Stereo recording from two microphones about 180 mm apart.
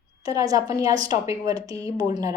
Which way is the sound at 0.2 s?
20° right (ahead or behind).